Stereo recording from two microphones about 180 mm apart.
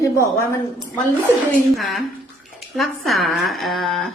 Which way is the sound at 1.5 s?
Centre (ahead or behind).